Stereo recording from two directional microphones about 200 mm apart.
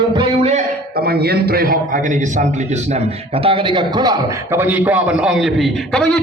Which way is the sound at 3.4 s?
25° right (ahead or behind).